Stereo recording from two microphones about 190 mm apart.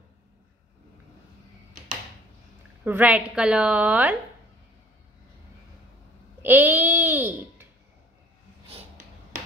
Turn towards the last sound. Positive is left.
turn(degrees=-10)  # may be behind; listen again after turning